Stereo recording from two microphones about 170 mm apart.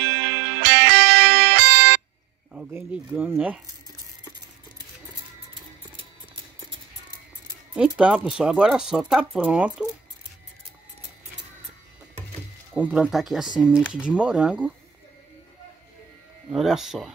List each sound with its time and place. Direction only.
0.0 s music: 90° right
2.5 s speech: 10° right (ahead or behind)
7.7 s speech: 5° right (ahead or behind)
12.7 s speech: 5° right (ahead or behind)
16.4 s speech: 5° right (ahead or behind)